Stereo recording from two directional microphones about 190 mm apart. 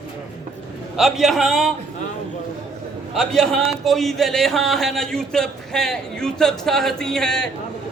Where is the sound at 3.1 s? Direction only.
Centre (ahead or behind).